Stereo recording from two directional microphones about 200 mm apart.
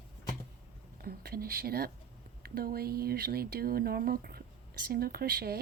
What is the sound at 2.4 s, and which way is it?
Speech, 50° right (ahead or behind).